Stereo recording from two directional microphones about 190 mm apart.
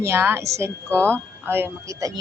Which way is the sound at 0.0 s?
15° right (ahead or behind).